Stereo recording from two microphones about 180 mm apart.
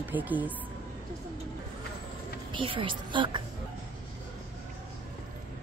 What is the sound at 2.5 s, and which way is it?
Speech, 30° right (ahead or behind).